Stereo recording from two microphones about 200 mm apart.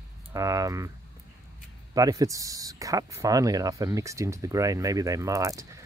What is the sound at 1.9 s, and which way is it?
Speech, 15° right (ahead or behind).